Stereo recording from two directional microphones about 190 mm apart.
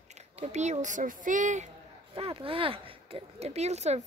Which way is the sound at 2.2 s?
30° right (ahead or behind).